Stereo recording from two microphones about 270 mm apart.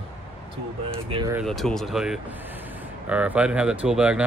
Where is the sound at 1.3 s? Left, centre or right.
Centre.